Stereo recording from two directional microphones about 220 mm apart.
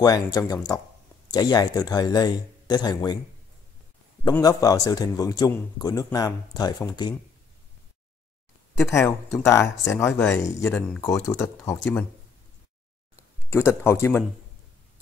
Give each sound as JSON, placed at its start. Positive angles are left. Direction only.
{"t": 0.0, "sound": "a man's voice", "side_deg": 15}
{"t": 4.2, "sound": "a man's voice", "side_deg": 15}
{"t": 8.7, "sound": "a man's voice", "side_deg": 10}
{"t": 13.1, "sound": "speech", "side_deg": 10}